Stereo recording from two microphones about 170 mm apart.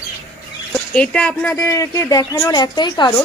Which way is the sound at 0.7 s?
5° left (ahead or behind).